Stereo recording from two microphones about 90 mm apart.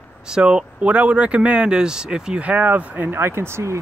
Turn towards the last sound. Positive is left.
turn(degrees=-30)  # may be behind; listen again after turning